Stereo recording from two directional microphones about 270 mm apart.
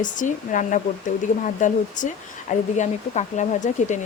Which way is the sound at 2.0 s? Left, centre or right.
Left.